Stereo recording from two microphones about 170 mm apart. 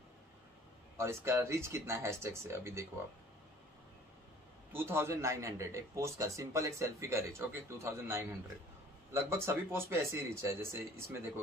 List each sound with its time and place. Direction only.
0.9 s speech: 15° right (ahead or behind)
4.7 s speech: 15° right (ahead or behind)